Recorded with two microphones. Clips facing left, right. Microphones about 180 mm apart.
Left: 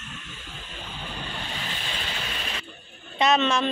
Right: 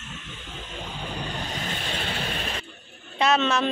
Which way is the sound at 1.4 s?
40° right (ahead or behind).